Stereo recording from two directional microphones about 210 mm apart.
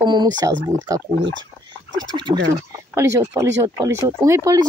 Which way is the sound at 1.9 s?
20° right (ahead or behind).